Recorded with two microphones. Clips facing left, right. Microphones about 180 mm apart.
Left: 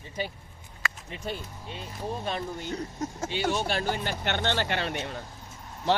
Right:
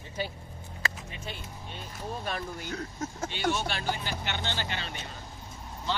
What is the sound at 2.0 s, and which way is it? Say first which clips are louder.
Speech: left 3 dB; 20° left (ahead or behind).